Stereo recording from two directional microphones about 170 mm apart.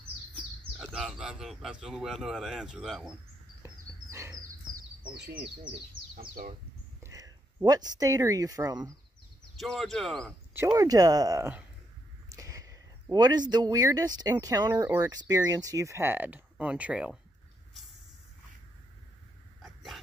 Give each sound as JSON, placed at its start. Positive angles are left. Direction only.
{"t": 0.4, "sound": "speech", "side_deg": -5}
{"t": 4.1, "sound": "bird", "side_deg": -15}
{"t": 5.1, "sound": "speech", "side_deg": -80}
{"t": 6.1, "sound": "speech", "side_deg": -60}
{"t": 7.0, "sound": "speech", "side_deg": -20}
{"t": 9.6, "sound": "speech", "side_deg": 0}
{"t": 10.7, "sound": "speech", "side_deg": -20}
{"t": 12.3, "sound": "a sound", "side_deg": -20}
{"t": 14.3, "sound": "speech", "side_deg": -20}
{"t": 19.6, "sound": "dog", "side_deg": 0}